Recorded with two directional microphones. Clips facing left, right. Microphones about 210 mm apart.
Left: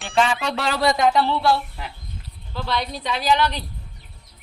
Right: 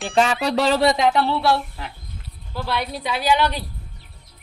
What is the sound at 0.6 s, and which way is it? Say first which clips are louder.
Speech: right 7 dB; 30° right (ahead or behind).